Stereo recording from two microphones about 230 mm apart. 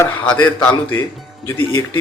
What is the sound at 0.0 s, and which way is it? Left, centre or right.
Speech, centre.